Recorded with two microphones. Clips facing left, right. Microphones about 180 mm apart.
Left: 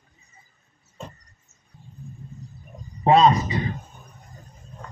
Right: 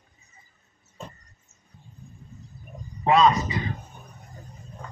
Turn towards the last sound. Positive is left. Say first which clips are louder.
# left 3 dB
turn(degrees=35)  # may be behind; listen again after turning